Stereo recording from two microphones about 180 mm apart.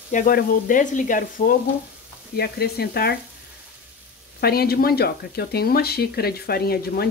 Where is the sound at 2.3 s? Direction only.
60° left (ahead or behind).